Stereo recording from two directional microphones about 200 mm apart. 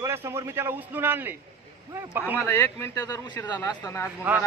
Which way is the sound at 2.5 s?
10° left (ahead or behind).